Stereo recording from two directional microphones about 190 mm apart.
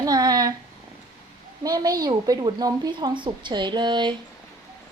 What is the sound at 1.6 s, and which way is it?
A woman's voice, 20° right (ahead or behind).